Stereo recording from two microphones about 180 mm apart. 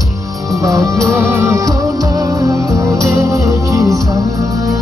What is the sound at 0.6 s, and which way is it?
Music, 15° right (ahead or behind).